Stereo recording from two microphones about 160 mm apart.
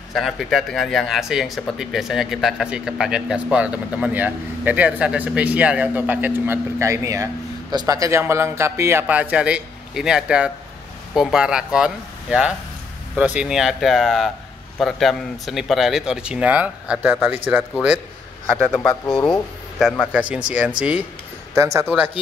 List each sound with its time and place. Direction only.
0.1 s speech: centre (ahead or behind)
18.7 s speech: 20° left (ahead or behind)
19.8 s a man's voice: 5° left (ahead or behind)
20.1 s speech: 10° right (ahead or behind)